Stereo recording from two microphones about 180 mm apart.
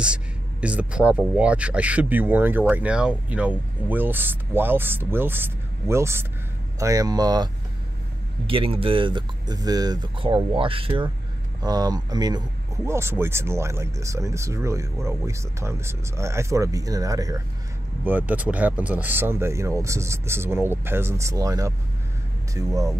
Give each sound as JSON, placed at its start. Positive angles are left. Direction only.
{"t": 0.0, "sound": "speech", "side_deg": -5}
{"t": 8.5, "sound": "speech", "side_deg": -30}